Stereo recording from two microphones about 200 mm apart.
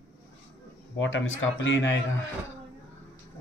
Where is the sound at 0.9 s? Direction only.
75° left (ahead or behind).